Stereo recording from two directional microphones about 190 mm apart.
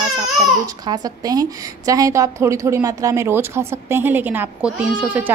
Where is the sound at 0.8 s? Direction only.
20° right (ahead or behind).